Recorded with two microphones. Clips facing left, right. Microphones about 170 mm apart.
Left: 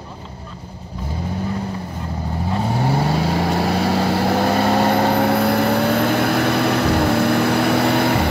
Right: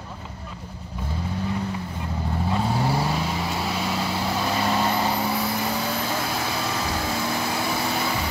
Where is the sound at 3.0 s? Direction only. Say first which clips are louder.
Left 6 dB; 60° left (ahead or behind).